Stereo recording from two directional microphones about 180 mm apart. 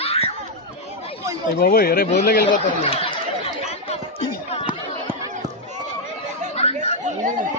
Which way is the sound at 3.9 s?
30° left (ahead or behind).